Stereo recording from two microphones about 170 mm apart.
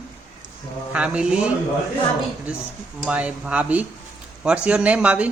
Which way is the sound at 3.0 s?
5° right (ahead or behind).